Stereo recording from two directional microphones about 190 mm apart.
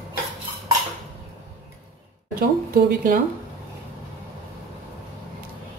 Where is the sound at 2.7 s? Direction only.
50° right (ahead or behind).